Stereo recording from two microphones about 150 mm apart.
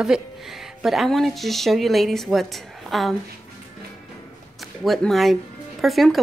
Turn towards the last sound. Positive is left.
turn(degrees=0)  # may be behind; listen again after turning